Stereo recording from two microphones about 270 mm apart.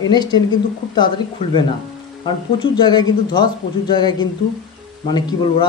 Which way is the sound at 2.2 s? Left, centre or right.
Centre.